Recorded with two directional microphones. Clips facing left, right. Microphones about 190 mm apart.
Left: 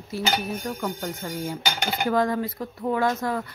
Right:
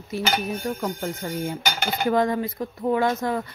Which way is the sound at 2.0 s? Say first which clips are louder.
Right 2 dB; 20° right (ahead or behind).